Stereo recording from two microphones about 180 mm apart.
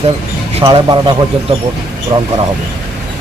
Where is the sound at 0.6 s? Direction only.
25° right (ahead or behind).